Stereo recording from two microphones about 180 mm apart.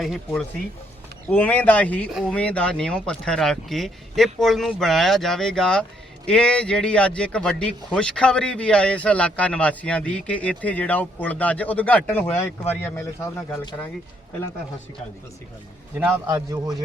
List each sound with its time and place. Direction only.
0.0 s a man's voice: centre (ahead or behind)
16.2 s a man's voice: 20° right (ahead or behind)